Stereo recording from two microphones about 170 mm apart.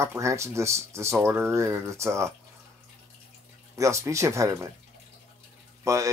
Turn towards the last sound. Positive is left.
turn(degrees=-20)  # may be behind; listen again after turning